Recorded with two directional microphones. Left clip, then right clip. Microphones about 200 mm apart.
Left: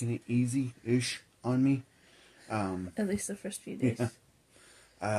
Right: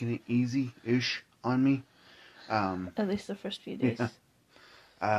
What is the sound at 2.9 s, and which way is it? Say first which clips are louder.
Speech: right 2 dB; 40° right (ahead or behind).